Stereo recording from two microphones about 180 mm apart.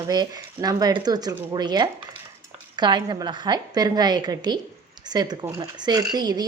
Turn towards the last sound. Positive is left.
turn(degrees=-20)  # may be behind; listen again after turning